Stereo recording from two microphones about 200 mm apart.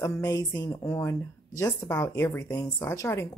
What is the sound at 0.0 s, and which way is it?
A woman's voice, 15° left (ahead or behind).